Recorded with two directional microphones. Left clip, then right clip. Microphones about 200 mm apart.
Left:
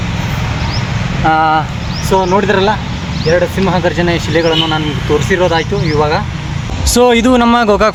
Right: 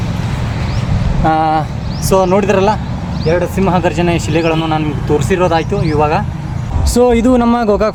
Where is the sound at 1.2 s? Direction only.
40° right (ahead or behind).